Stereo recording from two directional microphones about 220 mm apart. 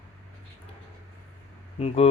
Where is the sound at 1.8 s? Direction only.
25° left (ahead or behind).